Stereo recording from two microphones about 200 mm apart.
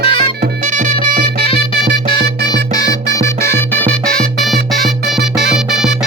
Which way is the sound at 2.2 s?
55° right (ahead or behind).